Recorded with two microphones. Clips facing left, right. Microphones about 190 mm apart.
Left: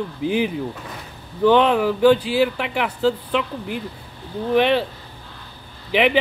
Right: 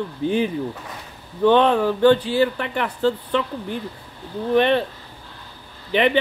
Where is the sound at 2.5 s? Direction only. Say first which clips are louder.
Left 1 dB; 90° left.